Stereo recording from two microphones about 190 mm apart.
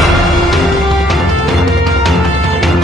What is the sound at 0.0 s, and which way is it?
Music, centre (ahead or behind).